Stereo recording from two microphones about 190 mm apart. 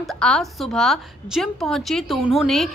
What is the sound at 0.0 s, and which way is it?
A woman's voice, 5° left (ahead or behind).